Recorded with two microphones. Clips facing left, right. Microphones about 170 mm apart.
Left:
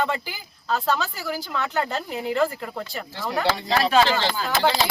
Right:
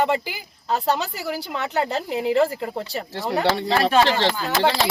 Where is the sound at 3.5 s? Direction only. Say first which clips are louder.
Even; 60° right (ahead or behind).